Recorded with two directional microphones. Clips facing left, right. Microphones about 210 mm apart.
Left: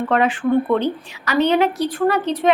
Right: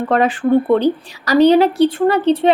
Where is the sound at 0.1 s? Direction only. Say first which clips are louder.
Right 4 dB; 35° right (ahead or behind).